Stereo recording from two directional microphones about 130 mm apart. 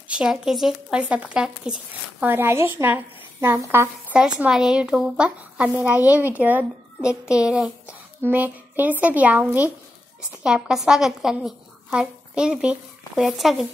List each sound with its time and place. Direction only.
0.1 s speech: 5° right (ahead or behind)
2.3 s a woman's voice: 20° right (ahead or behind)
4.4 s a woman's voice: 5° right (ahead or behind)